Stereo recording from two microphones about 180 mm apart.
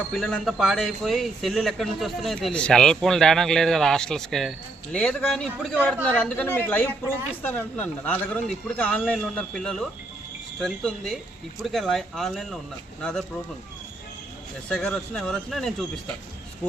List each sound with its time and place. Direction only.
0.1 s a man's voice: 5° left (ahead or behind)
14.7 s a man's voice: 5° left (ahead or behind)